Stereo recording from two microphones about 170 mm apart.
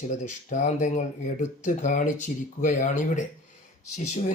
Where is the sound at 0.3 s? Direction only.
45° left (ahead or behind).